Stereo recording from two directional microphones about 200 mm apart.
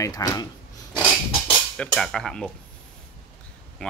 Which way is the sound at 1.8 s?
5° left (ahead or behind).